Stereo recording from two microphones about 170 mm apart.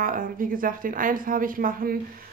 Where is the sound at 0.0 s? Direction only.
55° right (ahead or behind).